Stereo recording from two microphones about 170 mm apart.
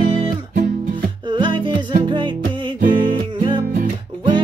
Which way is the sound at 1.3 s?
30° right (ahead or behind).